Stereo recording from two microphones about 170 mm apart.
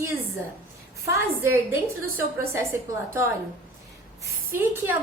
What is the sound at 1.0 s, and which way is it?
A woman's voice, 15° right (ahead or behind).